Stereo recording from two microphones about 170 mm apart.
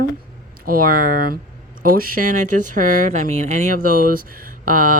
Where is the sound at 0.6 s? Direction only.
60° right (ahead or behind).